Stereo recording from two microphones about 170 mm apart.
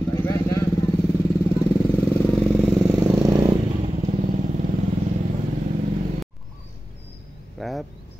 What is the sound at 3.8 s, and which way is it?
Motorcycle, 45° right (ahead or behind).